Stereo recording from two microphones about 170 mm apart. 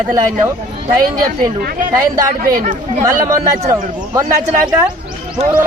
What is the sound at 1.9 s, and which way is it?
Speech, 20° right (ahead or behind).